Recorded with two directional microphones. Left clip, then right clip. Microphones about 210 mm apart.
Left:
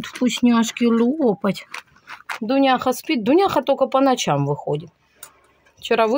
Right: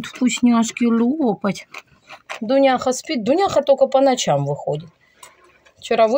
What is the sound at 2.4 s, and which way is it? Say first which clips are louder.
Speech: right 2 dB; 30° left (ahead or behind).